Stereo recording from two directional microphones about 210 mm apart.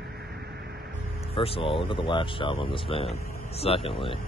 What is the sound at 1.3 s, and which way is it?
Speech, 25° left (ahead or behind).